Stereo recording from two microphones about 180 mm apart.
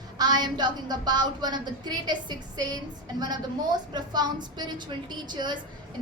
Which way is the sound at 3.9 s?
25° right (ahead or behind).